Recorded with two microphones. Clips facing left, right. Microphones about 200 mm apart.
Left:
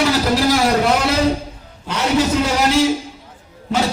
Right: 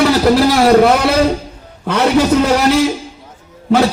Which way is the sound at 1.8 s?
60° right (ahead or behind).